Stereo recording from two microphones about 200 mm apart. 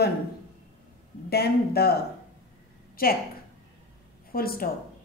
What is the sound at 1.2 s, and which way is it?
A woman's voice, 55° left (ahead or behind).